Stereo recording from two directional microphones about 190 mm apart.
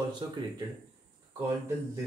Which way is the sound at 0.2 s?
20° right (ahead or behind).